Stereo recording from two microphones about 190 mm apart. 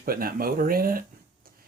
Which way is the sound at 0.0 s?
50° right (ahead or behind).